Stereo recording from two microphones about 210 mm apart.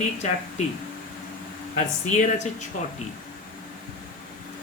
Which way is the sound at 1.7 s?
35° left (ahead or behind).